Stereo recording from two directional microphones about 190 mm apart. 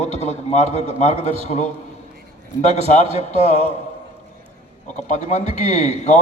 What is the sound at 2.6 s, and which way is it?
Speech, 35° left (ahead or behind).